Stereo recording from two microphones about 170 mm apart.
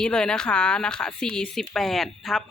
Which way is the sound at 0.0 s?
5° left (ahead or behind).